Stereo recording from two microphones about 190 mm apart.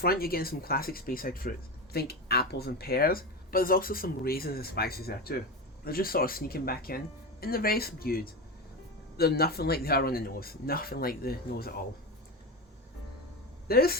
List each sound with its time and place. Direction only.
0.0 s speech: 50° left (ahead or behind)
13.7 s speech: 55° left (ahead or behind)